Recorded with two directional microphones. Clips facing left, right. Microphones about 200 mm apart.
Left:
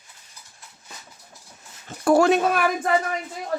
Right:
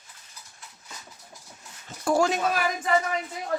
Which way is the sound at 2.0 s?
65° left (ahead or behind).